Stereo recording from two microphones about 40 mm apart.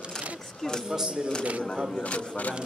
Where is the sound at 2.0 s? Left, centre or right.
Left.